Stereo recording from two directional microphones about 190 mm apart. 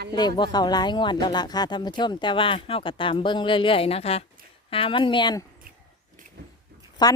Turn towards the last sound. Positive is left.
turn(degrees=20)  # may be behind; listen again after turning